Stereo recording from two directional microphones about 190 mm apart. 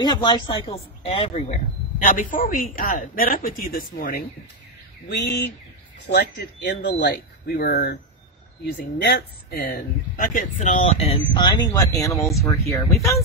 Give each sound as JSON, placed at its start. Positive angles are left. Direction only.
{"t": 0.0, "sound": "speech", "side_deg": 25}
{"t": 2.3, "sound": "speech", "side_deg": 50}
{"t": 5.0, "sound": "speech", "side_deg": 65}
{"t": 11.0, "sound": "speech", "side_deg": 25}